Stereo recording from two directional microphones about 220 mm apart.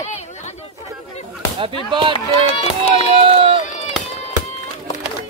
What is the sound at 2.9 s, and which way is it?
Run, 25° right (ahead or behind).